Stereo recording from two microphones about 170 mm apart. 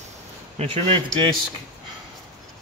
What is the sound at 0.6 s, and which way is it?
Speech, 30° right (ahead or behind).